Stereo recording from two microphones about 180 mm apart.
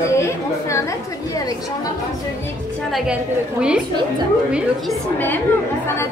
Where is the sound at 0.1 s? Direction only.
15° left (ahead or behind).